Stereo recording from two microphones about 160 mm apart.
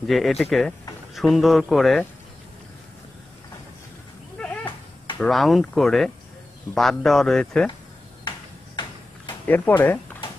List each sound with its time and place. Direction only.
0.0 s a man's voice: centre (ahead or behind)
5.2 s a man's voice: centre (ahead or behind)
8.3 s a sound: 30° left (ahead or behind)
9.5 s speech: 10° left (ahead or behind)